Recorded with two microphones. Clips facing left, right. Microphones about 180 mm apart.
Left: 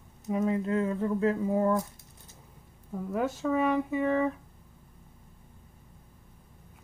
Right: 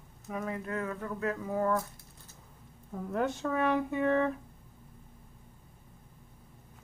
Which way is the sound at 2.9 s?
5° left (ahead or behind).